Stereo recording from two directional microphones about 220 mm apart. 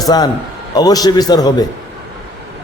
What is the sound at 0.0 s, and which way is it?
A man's voice, 20° left (ahead or behind).